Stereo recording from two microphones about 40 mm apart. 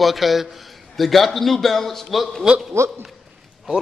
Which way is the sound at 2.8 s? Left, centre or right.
Right.